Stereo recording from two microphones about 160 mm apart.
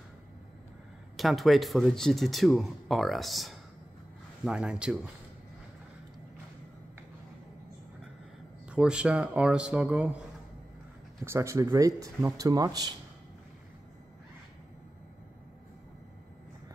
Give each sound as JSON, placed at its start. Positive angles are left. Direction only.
{"t": 1.1, "sound": "a man's voice", "side_deg": 0}
{"t": 8.6, "sound": "speech", "side_deg": -5}
{"t": 11.2, "sound": "speech", "side_deg": -20}